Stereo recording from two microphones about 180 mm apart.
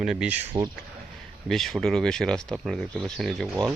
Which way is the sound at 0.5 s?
25° right (ahead or behind).